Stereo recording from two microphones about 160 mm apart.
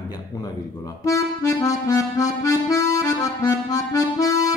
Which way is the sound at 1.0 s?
20° left (ahead or behind).